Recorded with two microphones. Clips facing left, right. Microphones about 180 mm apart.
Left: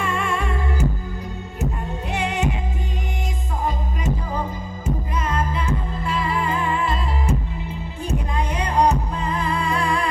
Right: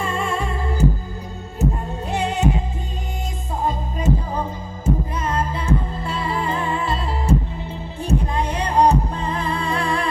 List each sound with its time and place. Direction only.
0.0 s music: 30° right (ahead or behind)
2.1 s music: 30° right (ahead or behind)
5.3 s music: 30° right (ahead or behind)